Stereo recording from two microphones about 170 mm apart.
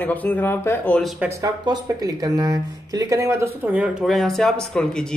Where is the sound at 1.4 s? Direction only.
20° right (ahead or behind).